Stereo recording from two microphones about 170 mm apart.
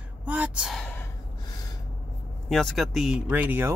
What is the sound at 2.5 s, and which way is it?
Speech, centre (ahead or behind).